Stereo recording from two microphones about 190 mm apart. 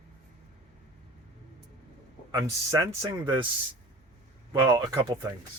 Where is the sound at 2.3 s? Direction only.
20° right (ahead or behind).